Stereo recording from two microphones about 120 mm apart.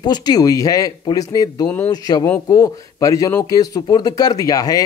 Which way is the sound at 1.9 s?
35° left (ahead or behind).